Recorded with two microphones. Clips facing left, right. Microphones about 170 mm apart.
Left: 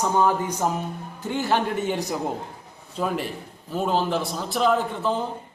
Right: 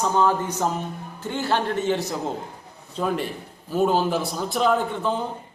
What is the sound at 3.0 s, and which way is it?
A man's voice, 5° left (ahead or behind).